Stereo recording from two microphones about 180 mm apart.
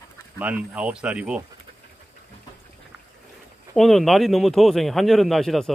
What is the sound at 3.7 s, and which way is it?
Speech, centre (ahead or behind).